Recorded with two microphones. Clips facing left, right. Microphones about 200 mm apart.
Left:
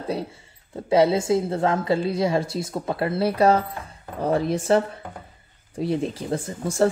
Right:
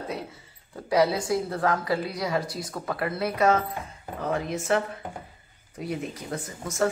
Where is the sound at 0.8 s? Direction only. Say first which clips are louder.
Left 5 dB; 25° left (ahead or behind).